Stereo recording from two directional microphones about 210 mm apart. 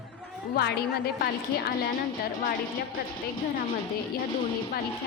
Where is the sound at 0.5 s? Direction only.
50° left (ahead or behind).